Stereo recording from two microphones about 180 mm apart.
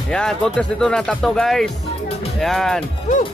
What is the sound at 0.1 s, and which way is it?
Speech, 5° left (ahead or behind).